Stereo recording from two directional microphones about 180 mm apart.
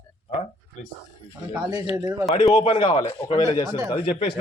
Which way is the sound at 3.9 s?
30° left (ahead or behind).